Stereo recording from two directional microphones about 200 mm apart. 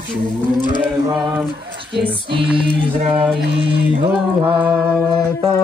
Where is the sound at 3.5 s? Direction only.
25° right (ahead or behind).